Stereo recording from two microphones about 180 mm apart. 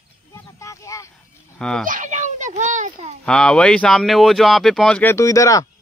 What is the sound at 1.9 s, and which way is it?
A child's voice, 45° right (ahead or behind).